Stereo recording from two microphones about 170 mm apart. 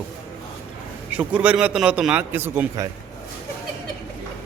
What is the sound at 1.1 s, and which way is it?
A man's voice, 10° right (ahead or behind).